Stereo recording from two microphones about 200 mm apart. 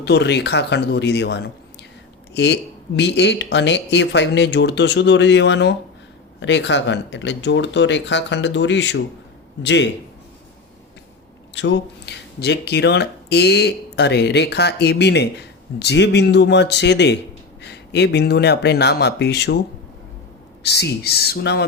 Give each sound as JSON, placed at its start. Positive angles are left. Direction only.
{"t": 0.0, "sound": "speech", "side_deg": 55}
{"t": 11.5, "sound": "speech", "side_deg": 65}
{"t": 20.7, "sound": "speech", "side_deg": 55}